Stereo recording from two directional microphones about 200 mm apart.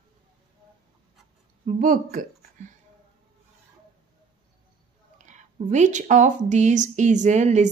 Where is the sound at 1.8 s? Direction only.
40° right (ahead or behind).